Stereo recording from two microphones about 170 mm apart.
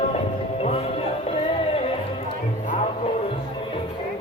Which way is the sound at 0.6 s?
35° left (ahead or behind).